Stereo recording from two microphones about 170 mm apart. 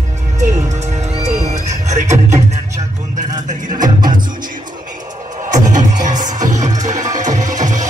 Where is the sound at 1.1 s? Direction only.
40° right (ahead or behind).